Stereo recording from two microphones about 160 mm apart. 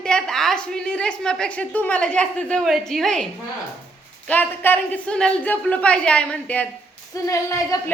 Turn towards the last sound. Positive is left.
turn(degrees=20)  # may be behind; listen again after turning